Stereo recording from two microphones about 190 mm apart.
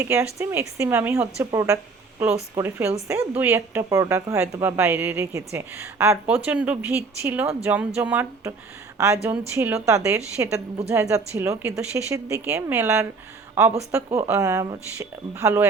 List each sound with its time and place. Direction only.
0.0 s speech: 15° right (ahead or behind)